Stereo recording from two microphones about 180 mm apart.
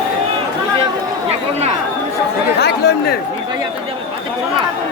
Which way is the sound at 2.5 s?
60° left (ahead or behind).